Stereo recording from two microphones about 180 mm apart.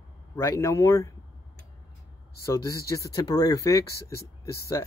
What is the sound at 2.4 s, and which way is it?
Speech, 15° left (ahead or behind).